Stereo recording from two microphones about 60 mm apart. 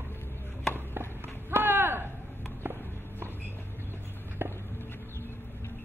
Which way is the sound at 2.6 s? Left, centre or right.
Right.